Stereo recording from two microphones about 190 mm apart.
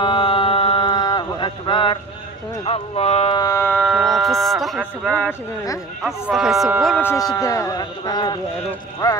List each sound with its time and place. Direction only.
0.0 s a sound: 25° left (ahead or behind)
2.6 s speech: 30° left (ahead or behind)
3.3 s speech: 15° left (ahead or behind)
3.8 s speech: centre (ahead or behind)
6.0 s speech: centre (ahead or behind)
7.1 s speech: 20° left (ahead or behind)